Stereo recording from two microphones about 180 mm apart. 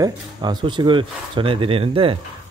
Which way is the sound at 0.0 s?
25° right (ahead or behind).